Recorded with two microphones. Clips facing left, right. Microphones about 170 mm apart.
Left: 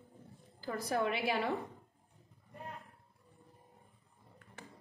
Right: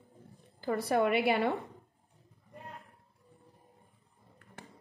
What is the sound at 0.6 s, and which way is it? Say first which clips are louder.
Speech: right 6 dB; 65° right (ahead or behind).